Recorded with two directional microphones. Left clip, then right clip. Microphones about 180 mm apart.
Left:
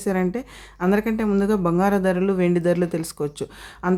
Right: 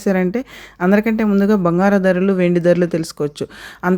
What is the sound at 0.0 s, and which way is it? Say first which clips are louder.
Speech: right 6 dB; 25° right (ahead or behind).